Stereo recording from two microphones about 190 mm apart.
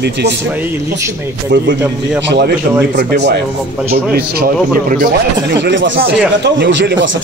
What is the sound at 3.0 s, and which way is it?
Speech, 60° right (ahead or behind).